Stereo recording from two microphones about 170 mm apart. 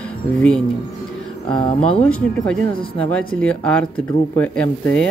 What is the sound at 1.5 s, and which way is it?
Speech, 30° left (ahead or behind).